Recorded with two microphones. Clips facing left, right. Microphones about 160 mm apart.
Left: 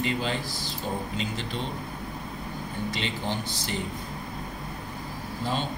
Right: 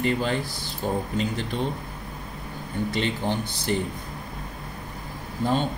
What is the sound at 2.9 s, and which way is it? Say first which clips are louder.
Speech: right 6 dB; 50° right (ahead or behind).